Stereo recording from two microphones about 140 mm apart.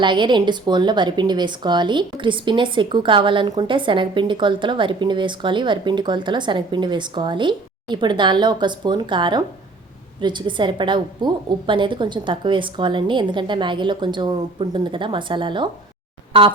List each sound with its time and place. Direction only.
0.0 s speech: 35° right (ahead or behind)